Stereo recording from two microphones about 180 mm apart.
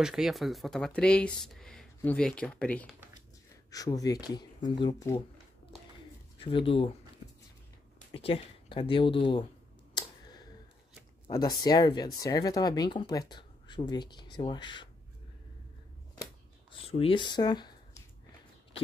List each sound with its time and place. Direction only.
0.0 s speech: centre (ahead or behind)
3.7 s speech: 20° left (ahead or behind)
6.4 s speech: 30° left (ahead or behind)
8.1 s speech: 30° left (ahead or behind)
9.9 s a sound: 25° left (ahead or behind)
11.2 s speech: 20° left (ahead or behind)
16.8 s speech: 35° left (ahead or behind)